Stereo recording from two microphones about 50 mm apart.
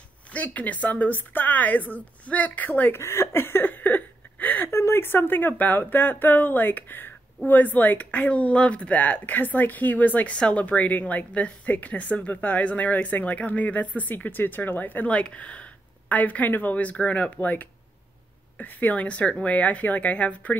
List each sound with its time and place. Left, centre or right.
0.3 s speech: left
3.0 s a sound: left
4.6 s speech: left
10.3 s a woman's voice: centre
10.6 s a woman's voice: left